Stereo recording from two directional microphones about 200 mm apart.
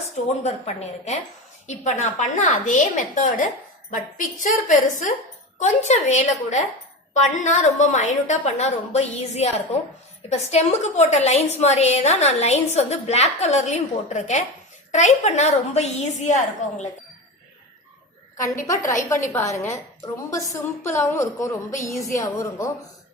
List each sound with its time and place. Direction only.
0.4 s a woman's voice: 30° left (ahead or behind)
4.7 s a woman's voice: 35° left (ahead or behind)
18.9 s a woman's voice: 15° left (ahead or behind)